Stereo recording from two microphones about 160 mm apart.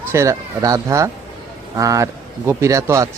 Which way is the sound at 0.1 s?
20° right (ahead or behind).